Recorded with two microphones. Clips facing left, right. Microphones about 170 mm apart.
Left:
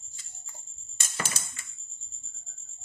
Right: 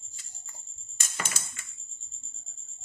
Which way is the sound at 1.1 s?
35° left (ahead or behind).